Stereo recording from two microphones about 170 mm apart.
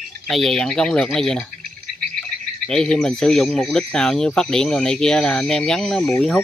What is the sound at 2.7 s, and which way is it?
Speech, 5° left (ahead or behind).